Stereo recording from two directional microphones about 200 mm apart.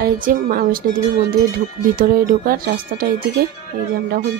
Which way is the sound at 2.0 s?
45° right (ahead or behind).